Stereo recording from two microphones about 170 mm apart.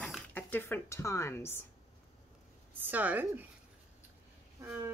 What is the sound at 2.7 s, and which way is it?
Speech, 10° right (ahead or behind).